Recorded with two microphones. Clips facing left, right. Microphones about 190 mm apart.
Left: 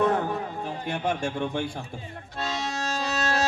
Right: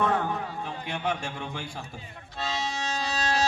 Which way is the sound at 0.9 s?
50° left (ahead or behind).